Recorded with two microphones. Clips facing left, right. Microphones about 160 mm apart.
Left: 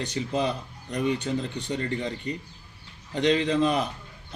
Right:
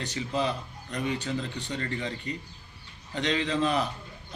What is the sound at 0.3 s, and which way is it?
A man's voice, 35° left (ahead or behind).